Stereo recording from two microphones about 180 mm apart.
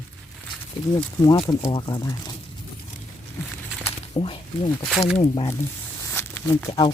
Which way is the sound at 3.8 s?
30° left (ahead or behind).